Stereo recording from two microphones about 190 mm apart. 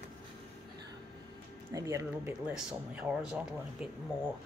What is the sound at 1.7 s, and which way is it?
Speech, 15° right (ahead or behind).